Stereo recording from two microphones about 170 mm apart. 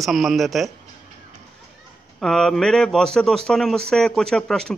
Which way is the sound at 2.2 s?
Centre (ahead or behind).